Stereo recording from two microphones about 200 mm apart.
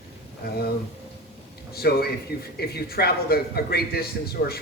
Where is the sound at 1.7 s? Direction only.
50° left (ahead or behind).